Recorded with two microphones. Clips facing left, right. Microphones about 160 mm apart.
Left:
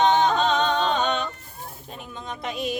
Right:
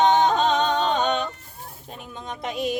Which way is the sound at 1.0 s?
45° right (ahead or behind).